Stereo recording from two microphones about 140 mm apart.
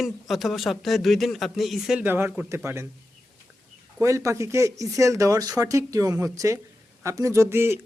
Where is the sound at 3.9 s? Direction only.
20° right (ahead or behind).